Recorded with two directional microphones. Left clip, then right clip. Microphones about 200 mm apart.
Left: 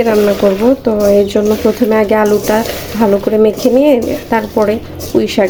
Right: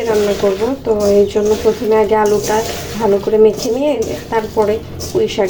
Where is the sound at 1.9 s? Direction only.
45° left (ahead or behind).